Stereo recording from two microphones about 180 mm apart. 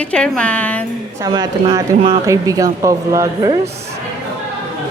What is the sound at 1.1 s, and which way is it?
Speech, 20° right (ahead or behind).